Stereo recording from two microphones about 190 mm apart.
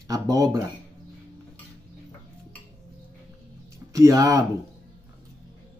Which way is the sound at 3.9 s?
20° right (ahead or behind).